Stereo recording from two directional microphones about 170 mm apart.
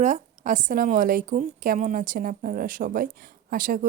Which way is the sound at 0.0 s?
50° right (ahead or behind).